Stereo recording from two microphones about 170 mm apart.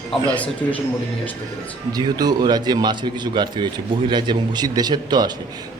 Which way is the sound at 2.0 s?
25° right (ahead or behind).